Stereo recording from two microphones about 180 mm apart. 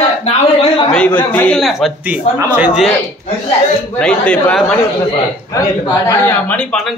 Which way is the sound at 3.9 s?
5° left (ahead or behind).